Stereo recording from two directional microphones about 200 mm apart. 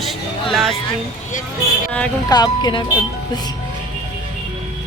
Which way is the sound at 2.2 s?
20° left (ahead or behind).